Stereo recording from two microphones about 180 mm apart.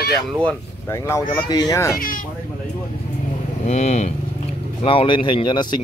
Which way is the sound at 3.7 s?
40° left (ahead or behind).